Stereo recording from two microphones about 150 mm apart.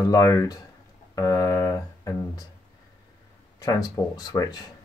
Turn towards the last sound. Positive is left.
turn(degrees=25)  # may be behind; listen again after turning